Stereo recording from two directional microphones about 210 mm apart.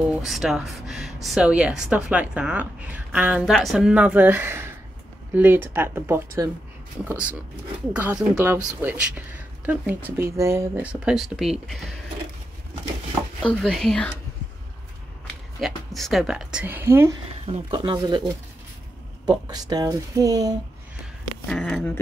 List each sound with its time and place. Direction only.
0.1 s speech: centre (ahead or behind)
7.9 s speech: 5° right (ahead or behind)
13.4 s speech: 5° left (ahead or behind)
15.6 s speech: centre (ahead or behind)
17.5 s speech: 25° right (ahead or behind)
21.5 s speech: 5° left (ahead or behind)